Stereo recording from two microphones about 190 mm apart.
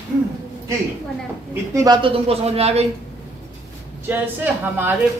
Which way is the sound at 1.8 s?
25° right (ahead or behind).